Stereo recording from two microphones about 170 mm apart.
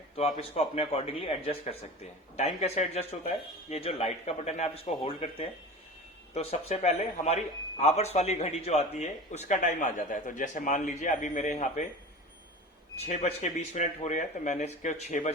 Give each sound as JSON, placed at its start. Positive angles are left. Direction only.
{"t": 0.2, "sound": "a man's voice", "side_deg": 35}
{"t": 13.0, "sound": "speech", "side_deg": 45}